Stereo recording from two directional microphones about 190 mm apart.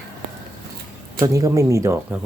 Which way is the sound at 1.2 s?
20° right (ahead or behind).